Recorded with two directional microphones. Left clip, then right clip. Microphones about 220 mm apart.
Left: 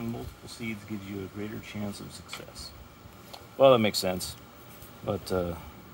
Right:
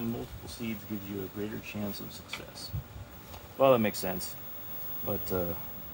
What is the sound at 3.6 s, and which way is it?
Speech, 45° left (ahead or behind).